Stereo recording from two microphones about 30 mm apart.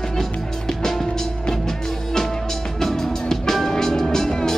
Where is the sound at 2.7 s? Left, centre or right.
Centre.